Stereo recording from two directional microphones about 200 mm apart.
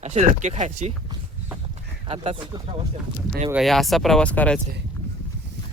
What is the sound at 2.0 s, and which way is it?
Speech, 30° right (ahead or behind).